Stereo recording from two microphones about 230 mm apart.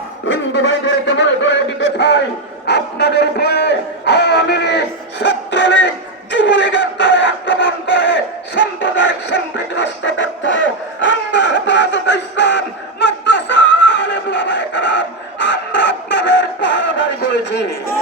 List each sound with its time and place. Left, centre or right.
1.0 s a man's voice: left
5.2 s music: left
6.3 s a sound: left